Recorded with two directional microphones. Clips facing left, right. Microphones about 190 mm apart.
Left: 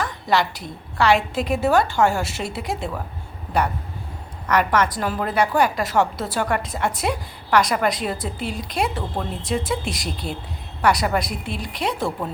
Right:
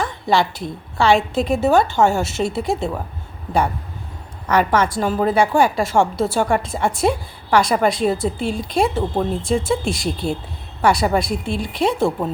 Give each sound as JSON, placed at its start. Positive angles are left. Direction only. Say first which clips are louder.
{"t": 0.0, "sound": "a woman's voice", "louder": "right 3 dB", "side_deg": -25}
{"t": 4.4, "sound": "a woman's voice", "louder": "right 3 dB", "side_deg": -30}